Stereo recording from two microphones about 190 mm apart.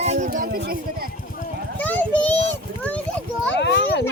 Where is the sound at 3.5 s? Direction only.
65° left (ahead or behind).